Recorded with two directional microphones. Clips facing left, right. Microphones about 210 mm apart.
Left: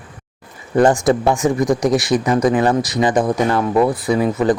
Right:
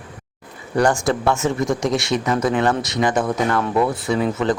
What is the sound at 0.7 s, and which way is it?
Speech, 20° left (ahead or behind).